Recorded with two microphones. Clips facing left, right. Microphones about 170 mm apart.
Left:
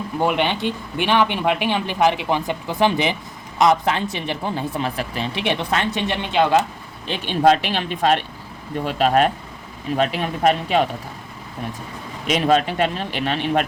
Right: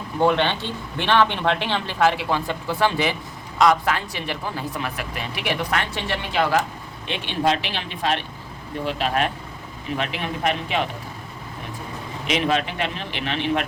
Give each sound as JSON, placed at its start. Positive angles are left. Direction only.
{"t": 0.2, "sound": "speech", "side_deg": 15}
{"t": 7.1, "sound": "speech", "side_deg": 45}
{"t": 12.3, "sound": "speech", "side_deg": 40}